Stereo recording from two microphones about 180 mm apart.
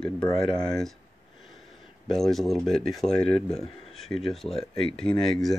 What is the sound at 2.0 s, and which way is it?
Speech, centre (ahead or behind).